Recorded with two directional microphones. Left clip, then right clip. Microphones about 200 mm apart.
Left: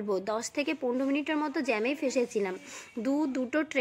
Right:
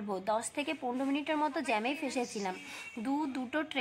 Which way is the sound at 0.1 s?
15° left (ahead or behind).